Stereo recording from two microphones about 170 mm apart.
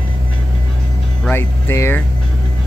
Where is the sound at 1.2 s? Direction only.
15° left (ahead or behind).